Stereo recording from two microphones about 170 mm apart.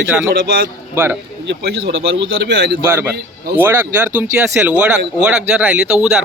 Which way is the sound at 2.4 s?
80° right.